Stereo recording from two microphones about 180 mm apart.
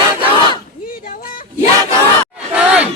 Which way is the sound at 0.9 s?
50° left (ahead or behind).